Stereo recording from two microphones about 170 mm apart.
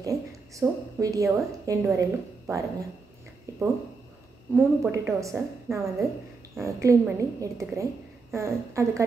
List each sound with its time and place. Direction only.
0.0 s a woman's voice: 20° right (ahead or behind)
4.6 s speech: 15° right (ahead or behind)